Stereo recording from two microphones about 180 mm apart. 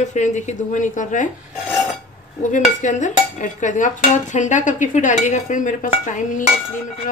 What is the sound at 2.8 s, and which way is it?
Dishes, 45° left (ahead or behind).